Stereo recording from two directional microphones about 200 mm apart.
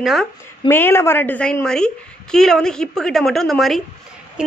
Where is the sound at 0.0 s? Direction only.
Centre (ahead or behind).